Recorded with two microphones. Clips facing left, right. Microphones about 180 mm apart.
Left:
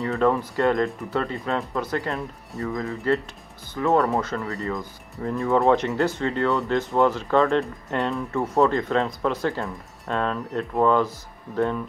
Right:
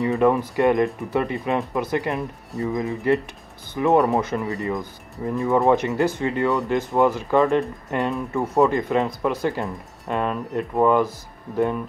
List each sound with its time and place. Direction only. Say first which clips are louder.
0.0 s speech: right 3 dB; 15° right (ahead or behind)